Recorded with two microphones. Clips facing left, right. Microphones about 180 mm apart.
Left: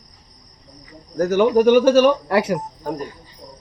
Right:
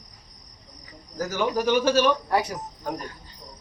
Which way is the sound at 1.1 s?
60° left (ahead or behind).